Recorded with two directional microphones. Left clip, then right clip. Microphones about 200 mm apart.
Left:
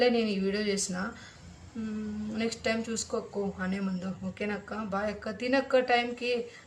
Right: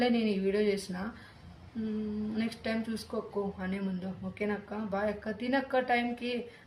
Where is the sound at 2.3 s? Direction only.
15° left (ahead or behind).